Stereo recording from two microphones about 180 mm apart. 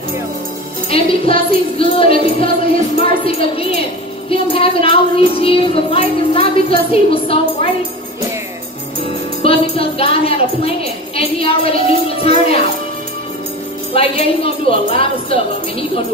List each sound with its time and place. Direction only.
0.8 s a woman's voice: 30° left (ahead or behind)
9.0 s music: 30° left (ahead or behind)
11.1 s a woman's voice: 30° left (ahead or behind)
13.9 s a woman's voice: 30° left (ahead or behind)